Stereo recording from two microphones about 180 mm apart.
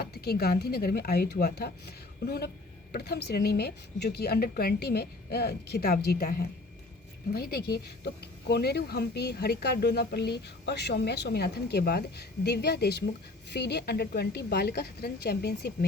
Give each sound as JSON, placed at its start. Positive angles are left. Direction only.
{"t": 0.0, "sound": "speech", "side_deg": 60}